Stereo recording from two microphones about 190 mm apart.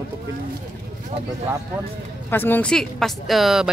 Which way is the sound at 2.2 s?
10° left (ahead or behind).